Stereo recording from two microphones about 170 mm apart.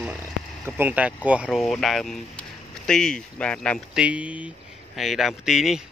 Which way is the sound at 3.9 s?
5° right (ahead or behind).